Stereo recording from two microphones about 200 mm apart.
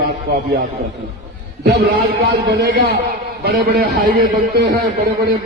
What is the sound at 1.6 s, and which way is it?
A man's voice, 50° right (ahead or behind).